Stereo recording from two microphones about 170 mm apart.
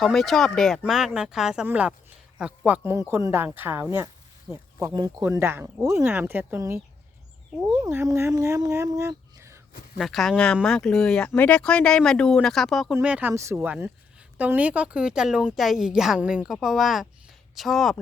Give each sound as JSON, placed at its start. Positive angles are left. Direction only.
{"t": 0.0, "sound": "speech", "side_deg": 0}
{"t": 10.0, "sound": "speech", "side_deg": 0}